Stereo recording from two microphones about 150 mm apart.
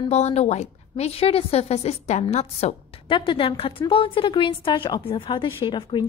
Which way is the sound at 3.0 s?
35° left (ahead or behind).